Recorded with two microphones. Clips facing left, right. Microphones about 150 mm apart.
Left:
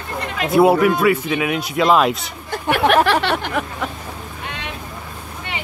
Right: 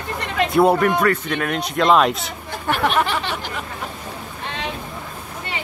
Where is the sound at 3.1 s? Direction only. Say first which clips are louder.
Left 6 dB; 70° left (ahead or behind).